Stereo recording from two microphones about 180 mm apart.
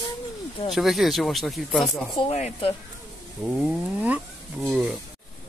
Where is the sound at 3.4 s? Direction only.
Centre (ahead or behind).